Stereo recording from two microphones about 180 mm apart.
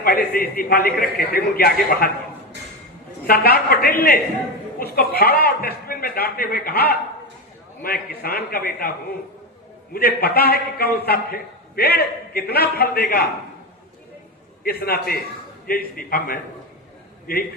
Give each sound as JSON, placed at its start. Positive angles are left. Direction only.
{"t": 0.0, "sound": "a man's voice", "side_deg": 55}
{"t": 3.2, "sound": "a man's voice", "side_deg": 60}
{"t": 9.9, "sound": "a man's voice", "side_deg": 60}
{"t": 14.6, "sound": "a man's voice", "side_deg": 60}